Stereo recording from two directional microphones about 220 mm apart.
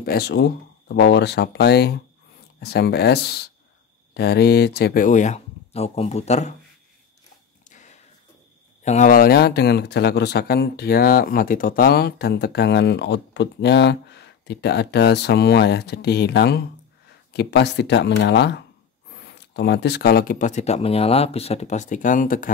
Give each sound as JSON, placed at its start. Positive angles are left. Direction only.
{"t": 0.0, "sound": "speech", "side_deg": 45}
{"t": 7.7, "sound": "a sound", "side_deg": 35}
{"t": 8.8, "sound": "speech", "side_deg": 35}